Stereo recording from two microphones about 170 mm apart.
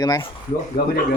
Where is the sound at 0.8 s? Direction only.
60° left (ahead or behind).